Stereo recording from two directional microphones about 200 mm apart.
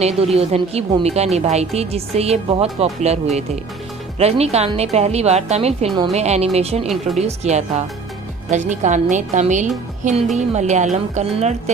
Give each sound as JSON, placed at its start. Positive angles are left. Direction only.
{"t": 0.2, "sound": "a woman's voice", "side_deg": -30}